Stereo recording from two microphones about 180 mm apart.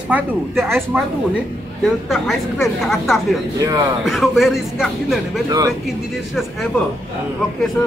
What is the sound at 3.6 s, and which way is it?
Speech, 20° right (ahead or behind).